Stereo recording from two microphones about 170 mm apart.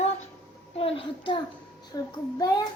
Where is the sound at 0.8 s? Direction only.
30° left (ahead or behind).